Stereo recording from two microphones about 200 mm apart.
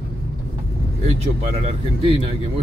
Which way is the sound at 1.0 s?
30° right (ahead or behind).